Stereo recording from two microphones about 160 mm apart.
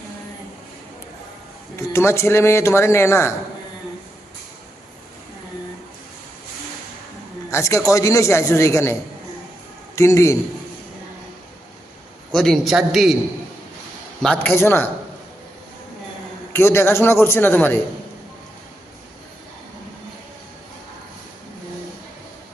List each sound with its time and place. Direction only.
1.7 s speech: 15° left (ahead or behind)
7.5 s a man's voice: 20° left (ahead or behind)
12.3 s a man's voice: 5° left (ahead or behind)
14.2 s speech: 10° left (ahead or behind)
16.5 s speech: 15° left (ahead or behind)